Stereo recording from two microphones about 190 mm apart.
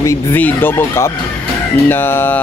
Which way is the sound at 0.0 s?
15° left (ahead or behind).